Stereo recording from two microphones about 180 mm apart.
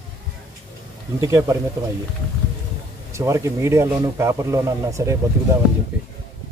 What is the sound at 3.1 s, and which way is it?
A man's voice, 15° right (ahead or behind).